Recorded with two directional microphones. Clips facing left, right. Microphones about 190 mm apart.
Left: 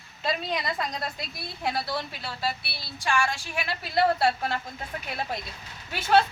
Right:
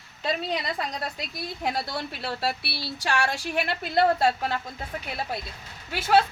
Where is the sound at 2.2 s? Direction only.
75° right (ahead or behind).